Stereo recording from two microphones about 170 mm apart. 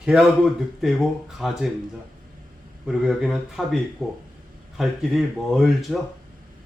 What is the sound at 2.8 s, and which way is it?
Speech, 5° right (ahead or behind).